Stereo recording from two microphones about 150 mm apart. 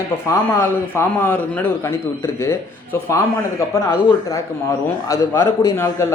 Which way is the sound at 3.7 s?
20° left (ahead or behind).